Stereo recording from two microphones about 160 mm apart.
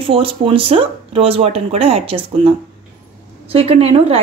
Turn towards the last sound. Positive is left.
turn(degrees=-40)  # may be behind; listen again after turning